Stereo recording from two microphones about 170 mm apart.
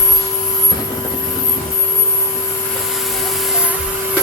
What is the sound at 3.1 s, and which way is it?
Vacuum cleaner, centre (ahead or behind).